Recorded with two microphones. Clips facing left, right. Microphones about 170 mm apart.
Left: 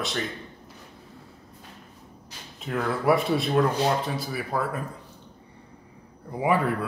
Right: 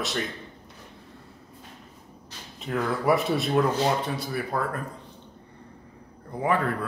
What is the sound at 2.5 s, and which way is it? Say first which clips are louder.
Speech: even; centre (ahead or behind).